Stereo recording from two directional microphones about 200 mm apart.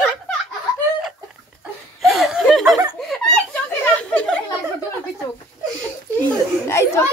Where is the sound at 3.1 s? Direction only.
5° left (ahead or behind).